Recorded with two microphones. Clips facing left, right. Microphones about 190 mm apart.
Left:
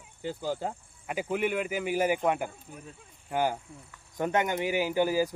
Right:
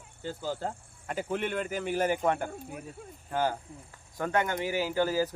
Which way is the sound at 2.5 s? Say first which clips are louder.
Right 6 dB; 55° right (ahead or behind).